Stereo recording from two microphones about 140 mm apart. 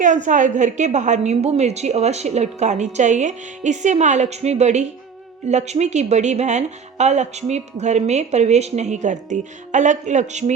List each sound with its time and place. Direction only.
0.0 s speech: 65° right (ahead or behind)